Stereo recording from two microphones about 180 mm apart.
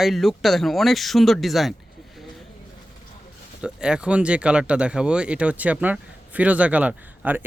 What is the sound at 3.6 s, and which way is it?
Speech, 5° right (ahead or behind).